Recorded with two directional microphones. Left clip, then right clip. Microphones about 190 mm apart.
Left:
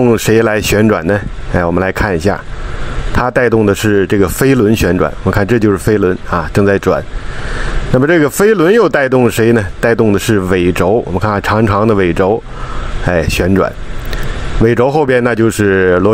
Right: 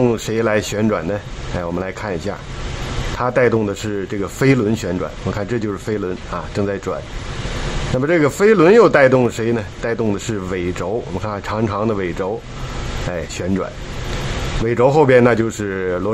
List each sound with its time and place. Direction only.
0.1 s speech: 35° left (ahead or behind)
8.0 s speech: 35° left (ahead or behind)
14.7 s speech: 35° left (ahead or behind)